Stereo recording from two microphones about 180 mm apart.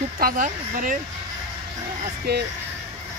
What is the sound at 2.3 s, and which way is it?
Speech, 65° right (ahead or behind).